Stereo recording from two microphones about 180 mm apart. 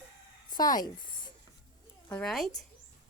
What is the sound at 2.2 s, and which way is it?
Speech, centre (ahead or behind).